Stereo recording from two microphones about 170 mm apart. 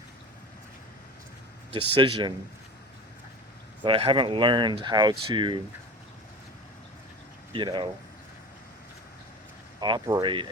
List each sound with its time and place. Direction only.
1.7 s speech: 30° right (ahead or behind)
3.8 s speech: 30° right (ahead or behind)
7.5 s speech: 30° right (ahead or behind)
9.8 s speech: 25° right (ahead or behind)